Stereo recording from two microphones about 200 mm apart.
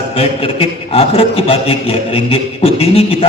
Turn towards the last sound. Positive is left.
turn(degrees=30)  # may be behind; listen again after turning